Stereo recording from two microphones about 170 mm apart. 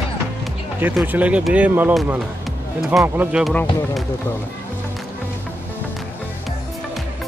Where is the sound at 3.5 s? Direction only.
5° left (ahead or behind).